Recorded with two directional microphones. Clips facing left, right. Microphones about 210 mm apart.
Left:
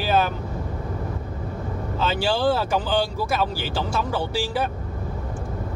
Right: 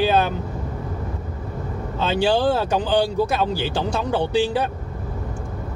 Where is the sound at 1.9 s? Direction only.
20° right (ahead or behind).